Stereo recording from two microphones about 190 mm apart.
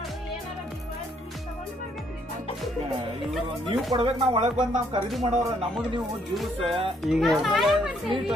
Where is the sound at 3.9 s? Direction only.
30° right (ahead or behind).